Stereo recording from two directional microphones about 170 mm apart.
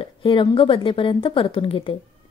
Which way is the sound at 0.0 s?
30° left (ahead or behind).